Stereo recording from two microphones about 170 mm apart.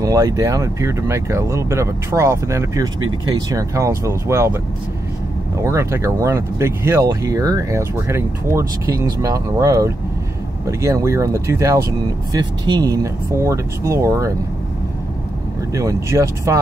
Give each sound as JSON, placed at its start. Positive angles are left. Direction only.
{"t": 0.0, "sound": "speech", "side_deg": -20}
{"t": 5.6, "sound": "speech", "side_deg": -15}
{"t": 15.7, "sound": "speech", "side_deg": -20}